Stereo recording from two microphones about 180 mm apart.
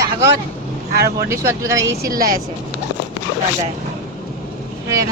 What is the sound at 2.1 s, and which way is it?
Speech, 50° right (ahead or behind).